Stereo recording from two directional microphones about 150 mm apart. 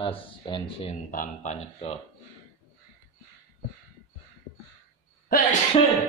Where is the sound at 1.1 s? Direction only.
60° left (ahead or behind); by 2.0 s 45° left (ahead or behind).